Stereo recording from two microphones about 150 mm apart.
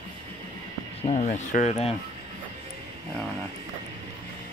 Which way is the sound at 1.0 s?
45° left (ahead or behind).